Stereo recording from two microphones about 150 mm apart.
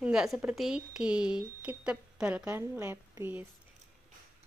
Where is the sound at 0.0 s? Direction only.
5° right (ahead or behind).